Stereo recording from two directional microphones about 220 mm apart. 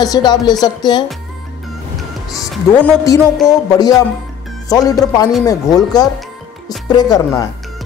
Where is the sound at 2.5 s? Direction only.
5° left (ahead or behind).